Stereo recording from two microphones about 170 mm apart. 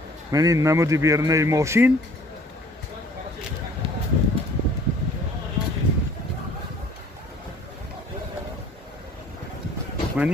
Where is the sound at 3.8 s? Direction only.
35° right (ahead or behind).